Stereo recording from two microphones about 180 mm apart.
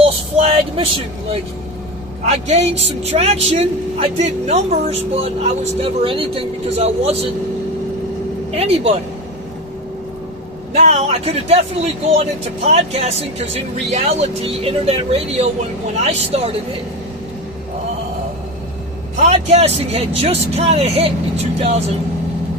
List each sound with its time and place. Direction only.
0.0 s vehicle: 35° right (ahead or behind)
2.2 s speech: 40° right (ahead or behind)
8.5 s speech: 35° right (ahead or behind)
10.8 s speech: 40° right (ahead or behind)
12.6 s speech: 35° right (ahead or behind)
19.1 s speech: 40° right (ahead or behind)